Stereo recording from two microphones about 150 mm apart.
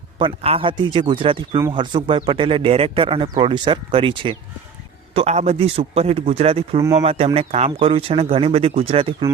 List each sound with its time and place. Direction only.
0.2 s speech: 35° right (ahead or behind)
5.1 s a man's voice: 45° right (ahead or behind)